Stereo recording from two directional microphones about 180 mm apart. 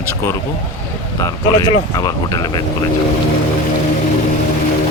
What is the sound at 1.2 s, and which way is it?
Speech, 20° left (ahead or behind).